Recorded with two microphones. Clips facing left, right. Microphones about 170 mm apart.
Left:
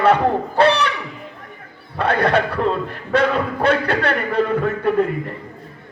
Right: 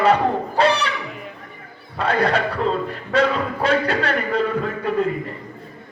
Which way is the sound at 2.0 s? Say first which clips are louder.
Left 2 dB; 60° left (ahead or behind).